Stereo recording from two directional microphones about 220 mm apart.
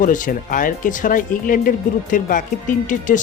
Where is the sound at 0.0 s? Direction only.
35° left (ahead or behind).